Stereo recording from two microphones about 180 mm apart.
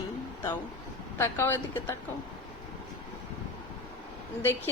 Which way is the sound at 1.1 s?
15° left (ahead or behind).